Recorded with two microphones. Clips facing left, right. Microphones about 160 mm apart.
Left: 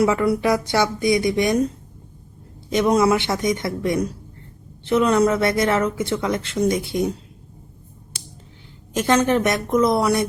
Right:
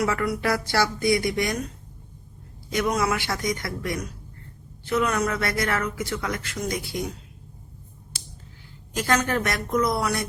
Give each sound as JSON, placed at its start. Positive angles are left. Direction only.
{"t": 0.0, "sound": "speech", "side_deg": 20}
{"t": 2.7, "sound": "speech", "side_deg": 25}
{"t": 9.0, "sound": "speech", "side_deg": 20}